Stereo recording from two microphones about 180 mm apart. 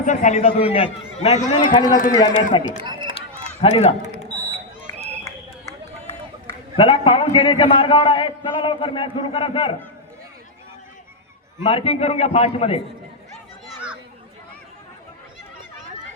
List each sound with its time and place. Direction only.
0.0 s a man's voice: 45° left (ahead or behind)
1.5 s a man's voice: 25° left (ahead or behind)
1.9 s a man's voice: 50° left (ahead or behind)
2.4 s a man's voice: 25° left (ahead or behind)
2.8 s run: 25° right (ahead or behind)
3.6 s a man's voice: 35° left (ahead or behind)
6.7 s a man's voice: 30° left (ahead or behind)
11.6 s a man's voice: 30° left (ahead or behind)